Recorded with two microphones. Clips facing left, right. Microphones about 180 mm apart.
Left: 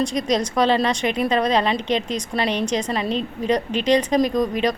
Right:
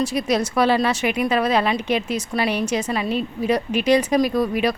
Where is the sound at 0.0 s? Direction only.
5° right (ahead or behind).